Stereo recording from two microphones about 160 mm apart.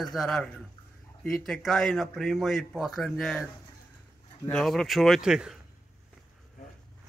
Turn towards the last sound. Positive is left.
turn(degrees=-5)  # may be behind; listen again after turning